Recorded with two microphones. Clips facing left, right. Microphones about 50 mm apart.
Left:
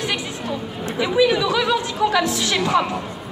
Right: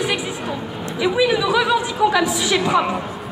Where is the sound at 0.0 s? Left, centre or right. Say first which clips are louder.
Right 3 dB; centre.